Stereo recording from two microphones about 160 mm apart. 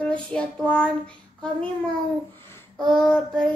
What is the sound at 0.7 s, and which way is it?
Child singing, 5° left (ahead or behind).